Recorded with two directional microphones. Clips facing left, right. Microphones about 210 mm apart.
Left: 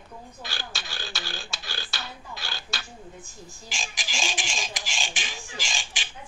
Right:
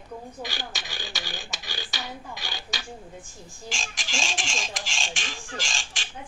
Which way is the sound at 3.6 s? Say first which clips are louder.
Right 2 dB; centre (ahead or behind).